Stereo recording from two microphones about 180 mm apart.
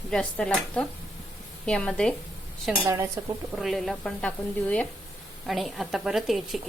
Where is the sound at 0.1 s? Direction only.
5° left (ahead or behind).